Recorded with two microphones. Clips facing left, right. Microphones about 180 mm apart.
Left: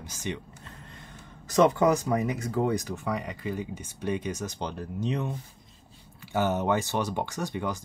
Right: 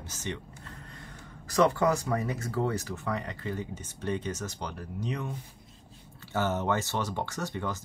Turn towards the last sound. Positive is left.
turn(degrees=15)  # may be behind; listen again after turning